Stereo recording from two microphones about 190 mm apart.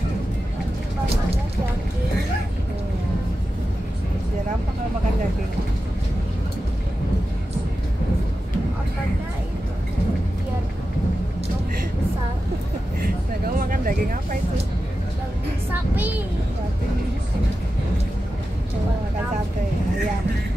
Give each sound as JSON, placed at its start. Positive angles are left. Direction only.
{"t": 13.6, "sound": "music", "side_deg": -50}